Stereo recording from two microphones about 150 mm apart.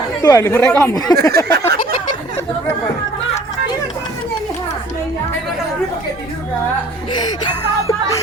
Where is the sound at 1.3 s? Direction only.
90° right.